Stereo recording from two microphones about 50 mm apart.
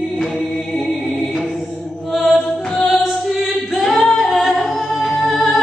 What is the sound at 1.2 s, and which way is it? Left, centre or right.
Music, centre.